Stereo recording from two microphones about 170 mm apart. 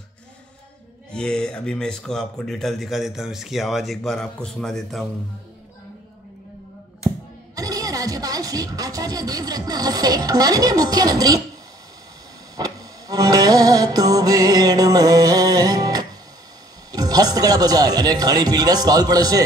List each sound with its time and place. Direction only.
1.1 s speech: 5° left (ahead or behind)
7.5 s speech: 20° right (ahead or behind)
12.5 s music: 20° right (ahead or behind)
16.9 s speech: 20° right (ahead or behind)